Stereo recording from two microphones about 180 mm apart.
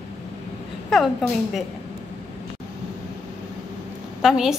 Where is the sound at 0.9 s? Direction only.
Centre (ahead or behind).